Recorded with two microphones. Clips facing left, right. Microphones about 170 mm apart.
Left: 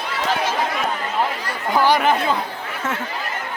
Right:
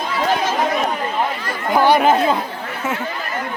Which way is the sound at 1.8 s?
20° right (ahead or behind).